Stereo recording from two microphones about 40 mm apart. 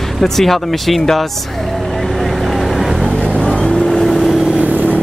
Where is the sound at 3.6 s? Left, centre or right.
Centre.